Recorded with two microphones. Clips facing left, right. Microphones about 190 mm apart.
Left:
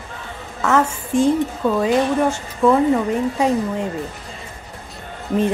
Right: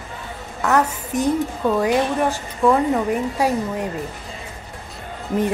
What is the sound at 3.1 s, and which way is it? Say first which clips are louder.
Speech: left 2 dB; 15° right (ahead or behind).